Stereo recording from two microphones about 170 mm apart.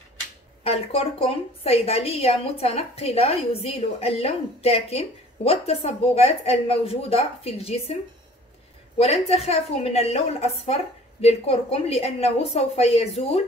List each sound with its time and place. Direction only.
0.7 s a woman's voice: 35° left (ahead or behind)